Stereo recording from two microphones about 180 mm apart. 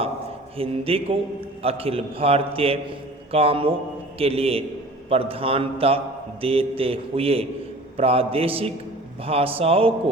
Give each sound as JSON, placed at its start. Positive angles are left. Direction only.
{"t": 0.5, "sound": "a man's voice", "side_deg": -30}